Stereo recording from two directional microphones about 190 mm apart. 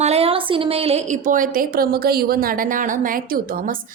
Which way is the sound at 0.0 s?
30° right (ahead or behind).